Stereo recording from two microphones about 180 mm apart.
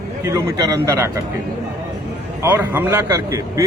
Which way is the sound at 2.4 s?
10° right (ahead or behind).